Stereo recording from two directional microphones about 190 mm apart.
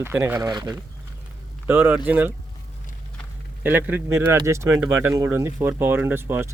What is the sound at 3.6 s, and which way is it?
Speech, 10° right (ahead or behind).